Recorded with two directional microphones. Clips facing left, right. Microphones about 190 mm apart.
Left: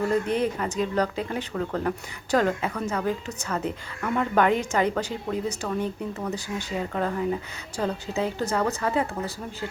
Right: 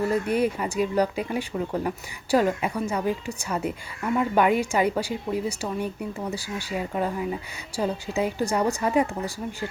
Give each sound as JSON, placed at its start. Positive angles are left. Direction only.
{"t": 0.1, "sound": "a woman's voice", "side_deg": -10}